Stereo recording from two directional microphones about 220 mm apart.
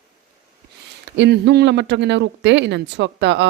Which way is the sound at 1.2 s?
50° right (ahead or behind).